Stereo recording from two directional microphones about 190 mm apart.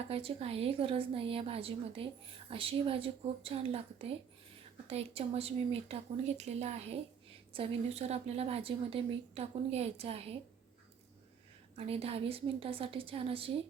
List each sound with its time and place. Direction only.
0.1 s a woman's voice: 30° right (ahead or behind)
11.9 s a woman's voice: 30° right (ahead or behind)